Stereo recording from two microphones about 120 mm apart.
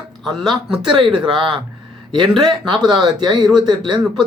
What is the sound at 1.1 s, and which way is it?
Speech, 45° right (ahead or behind).